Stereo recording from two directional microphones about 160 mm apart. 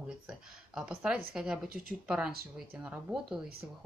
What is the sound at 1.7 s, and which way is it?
Speech, 65° right (ahead or behind).